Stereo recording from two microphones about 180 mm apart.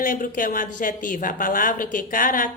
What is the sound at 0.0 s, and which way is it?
Speech, 50° left (ahead or behind).